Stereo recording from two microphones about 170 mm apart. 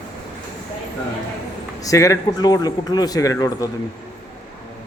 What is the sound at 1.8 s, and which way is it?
A man's voice, 20° left (ahead or behind).